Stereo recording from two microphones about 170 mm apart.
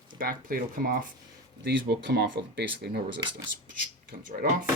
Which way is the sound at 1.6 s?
85° right.